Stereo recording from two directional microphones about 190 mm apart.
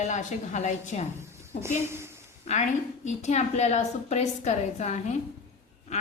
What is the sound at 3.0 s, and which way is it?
A woman's voice, 40° left (ahead or behind).